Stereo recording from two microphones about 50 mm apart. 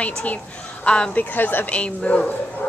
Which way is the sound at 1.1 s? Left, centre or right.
Left.